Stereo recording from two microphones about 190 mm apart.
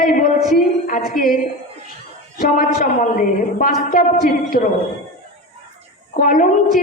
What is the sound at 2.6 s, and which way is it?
Speech, 45° left (ahead or behind).